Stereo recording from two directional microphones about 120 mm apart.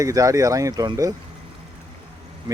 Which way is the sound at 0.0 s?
30° right (ahead or behind).